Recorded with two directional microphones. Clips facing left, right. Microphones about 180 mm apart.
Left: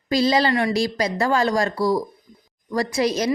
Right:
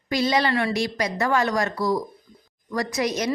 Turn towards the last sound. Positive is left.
turn(degrees=30)  # may be behind; listen again after turning